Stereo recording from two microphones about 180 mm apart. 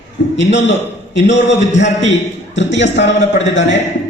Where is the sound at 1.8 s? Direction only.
85° left.